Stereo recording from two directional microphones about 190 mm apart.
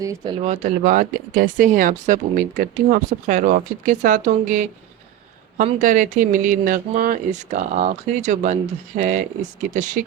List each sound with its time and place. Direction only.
0.0 s speech: 20° right (ahead or behind)
0.4 s speech: 40° right (ahead or behind)
5.6 s speech: 40° right (ahead or behind)